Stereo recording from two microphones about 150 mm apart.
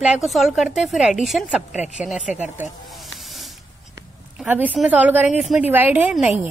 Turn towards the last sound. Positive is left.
turn(degrees=-5)  # may be behind; listen again after turning